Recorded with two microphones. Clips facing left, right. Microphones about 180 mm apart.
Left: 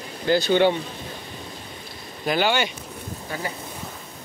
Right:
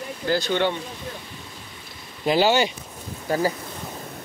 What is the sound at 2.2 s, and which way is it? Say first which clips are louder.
Speech: right 3 dB; 30° right (ahead or behind).